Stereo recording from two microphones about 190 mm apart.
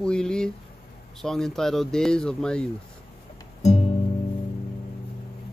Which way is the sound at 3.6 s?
35° left (ahead or behind).